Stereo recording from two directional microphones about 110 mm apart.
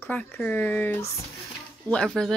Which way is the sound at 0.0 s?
15° left (ahead or behind).